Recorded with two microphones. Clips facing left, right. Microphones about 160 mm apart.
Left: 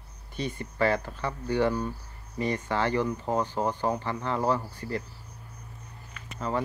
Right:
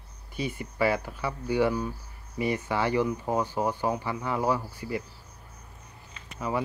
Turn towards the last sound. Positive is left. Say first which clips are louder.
# even
turn(degrees=-10)  # may be behind; listen again after turning